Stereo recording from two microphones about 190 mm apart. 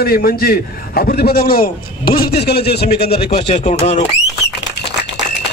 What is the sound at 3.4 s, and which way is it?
Speech, 35° left (ahead or behind).